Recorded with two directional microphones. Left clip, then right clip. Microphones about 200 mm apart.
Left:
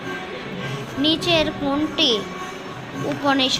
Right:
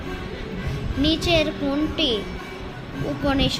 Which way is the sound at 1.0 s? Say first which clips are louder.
Left 2 dB; 10° right (ahead or behind).